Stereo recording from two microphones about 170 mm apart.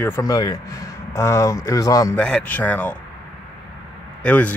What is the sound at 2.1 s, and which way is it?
Speech, 5° left (ahead or behind).